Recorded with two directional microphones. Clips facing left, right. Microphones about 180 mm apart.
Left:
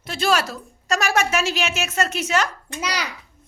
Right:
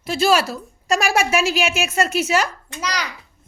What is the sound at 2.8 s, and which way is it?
Speech, 10° left (ahead or behind).